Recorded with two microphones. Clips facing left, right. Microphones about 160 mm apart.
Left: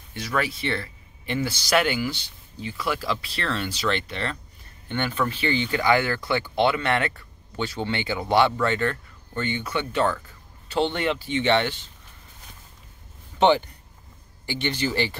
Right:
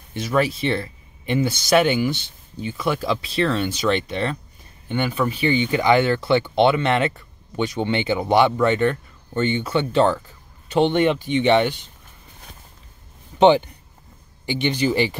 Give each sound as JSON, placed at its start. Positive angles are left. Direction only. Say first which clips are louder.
{"t": 0.1, "sound": "speech", "louder": "right 6 dB", "side_deg": -25}
{"t": 13.4, "sound": "speech", "louder": "right 5 dB", "side_deg": -15}